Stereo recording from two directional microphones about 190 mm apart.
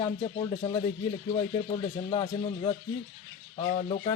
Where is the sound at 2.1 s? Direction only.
25° left (ahead or behind).